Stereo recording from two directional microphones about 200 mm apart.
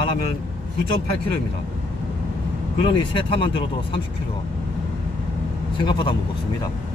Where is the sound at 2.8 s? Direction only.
25° left (ahead or behind).